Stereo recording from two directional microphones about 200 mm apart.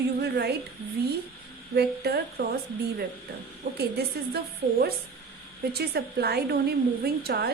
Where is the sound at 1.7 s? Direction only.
55° right (ahead or behind).